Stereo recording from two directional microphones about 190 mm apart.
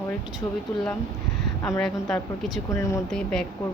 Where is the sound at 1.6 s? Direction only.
5° left (ahead or behind).